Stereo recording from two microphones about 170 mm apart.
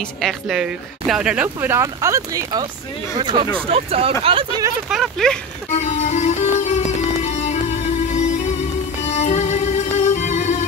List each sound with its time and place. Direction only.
0.2 s speech: centre (ahead or behind); by 2.6 s 20° right (ahead or behind)
3.2 s speech: 30° right (ahead or behind)
4.8 s speech: centre (ahead or behind)
5.7 s music: 40° left (ahead or behind)